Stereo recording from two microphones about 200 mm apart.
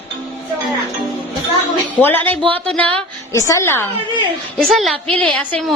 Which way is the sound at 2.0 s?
10° left (ahead or behind).